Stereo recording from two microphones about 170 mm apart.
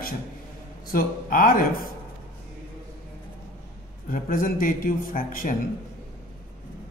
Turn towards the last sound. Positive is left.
turn(degrees=55)  # may be behind; listen again after turning